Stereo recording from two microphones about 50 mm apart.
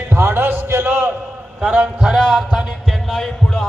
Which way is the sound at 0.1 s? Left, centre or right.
Right.